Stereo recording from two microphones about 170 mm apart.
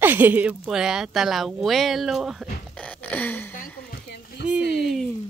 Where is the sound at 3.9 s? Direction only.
70° left (ahead or behind).